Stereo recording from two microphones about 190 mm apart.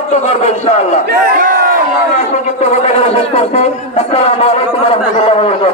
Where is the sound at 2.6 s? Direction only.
35° left (ahead or behind).